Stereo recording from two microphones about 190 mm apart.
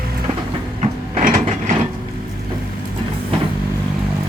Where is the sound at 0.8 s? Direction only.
35° right (ahead or behind).